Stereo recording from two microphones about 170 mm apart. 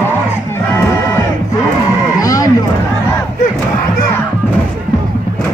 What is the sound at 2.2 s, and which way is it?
Sheep, 20° left (ahead or behind).